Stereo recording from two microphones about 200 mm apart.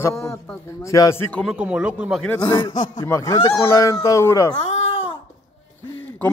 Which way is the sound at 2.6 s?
15° left (ahead or behind).